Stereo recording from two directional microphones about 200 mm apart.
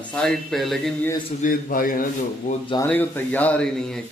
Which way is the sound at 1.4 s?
45° left (ahead or behind).